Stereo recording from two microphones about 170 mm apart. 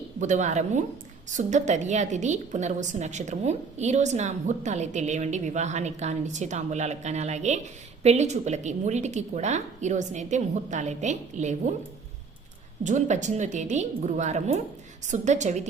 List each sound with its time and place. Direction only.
0.2 s a woman's voice: 45° right (ahead or behind)
12.8 s a woman's voice: 45° right (ahead or behind)